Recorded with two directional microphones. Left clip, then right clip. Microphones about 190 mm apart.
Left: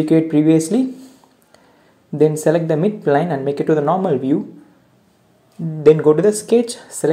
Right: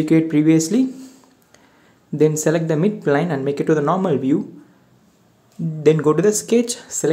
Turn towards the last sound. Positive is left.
turn(degrees=-10)  # may be behind; listen again after turning